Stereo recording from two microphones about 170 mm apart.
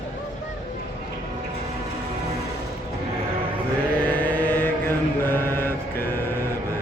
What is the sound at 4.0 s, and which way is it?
Mantra, 10° left (ahead or behind).